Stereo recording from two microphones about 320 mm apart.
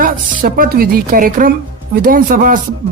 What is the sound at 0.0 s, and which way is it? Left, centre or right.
A woman's voice, right.